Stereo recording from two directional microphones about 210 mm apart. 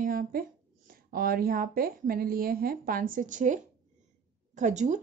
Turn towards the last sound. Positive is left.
turn(degrees=-35)  # may be behind; listen again after turning